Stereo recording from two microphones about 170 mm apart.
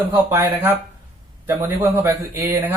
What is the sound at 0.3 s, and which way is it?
Speech, 15° right (ahead or behind).